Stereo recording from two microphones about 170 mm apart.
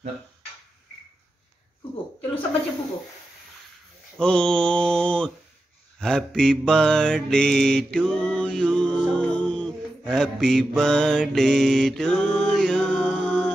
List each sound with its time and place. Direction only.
4.2 s mantra: 5° left (ahead or behind)